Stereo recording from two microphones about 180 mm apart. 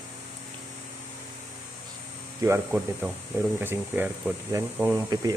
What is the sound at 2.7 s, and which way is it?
Speech, 5° right (ahead or behind).